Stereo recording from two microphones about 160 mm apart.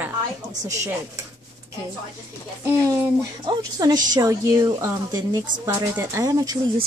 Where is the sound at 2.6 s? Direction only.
20° right (ahead or behind).